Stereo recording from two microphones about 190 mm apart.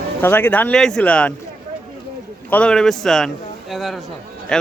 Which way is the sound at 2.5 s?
5° left (ahead or behind).